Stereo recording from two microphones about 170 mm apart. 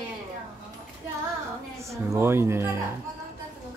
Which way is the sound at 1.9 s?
15° right (ahead or behind).